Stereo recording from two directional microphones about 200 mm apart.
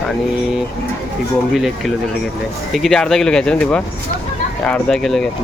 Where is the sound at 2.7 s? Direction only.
Centre (ahead or behind).